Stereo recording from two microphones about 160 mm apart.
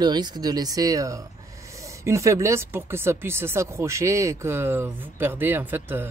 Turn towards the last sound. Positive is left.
turn(degrees=-15)  # may be behind; listen again after turning